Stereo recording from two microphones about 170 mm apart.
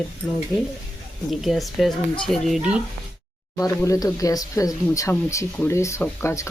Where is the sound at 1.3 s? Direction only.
Centre (ahead or behind).